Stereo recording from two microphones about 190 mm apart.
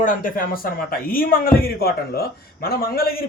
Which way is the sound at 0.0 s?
45° left (ahead or behind).